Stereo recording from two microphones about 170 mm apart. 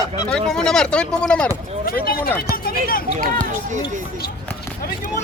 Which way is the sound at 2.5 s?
60° left (ahead or behind).